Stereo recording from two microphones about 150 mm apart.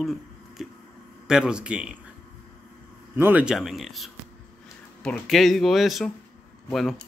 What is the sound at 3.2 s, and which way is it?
Speech, 10° right (ahead or behind).